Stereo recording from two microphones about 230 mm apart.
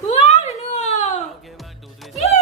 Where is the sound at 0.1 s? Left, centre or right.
Left.